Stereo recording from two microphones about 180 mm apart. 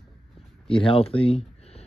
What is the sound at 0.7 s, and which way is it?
Speech, 30° left (ahead or behind).